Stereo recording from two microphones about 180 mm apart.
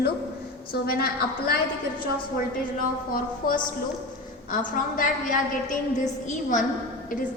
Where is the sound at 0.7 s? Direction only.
55° left (ahead or behind).